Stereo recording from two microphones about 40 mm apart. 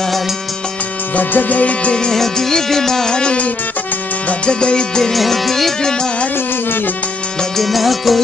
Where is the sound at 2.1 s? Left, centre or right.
Centre.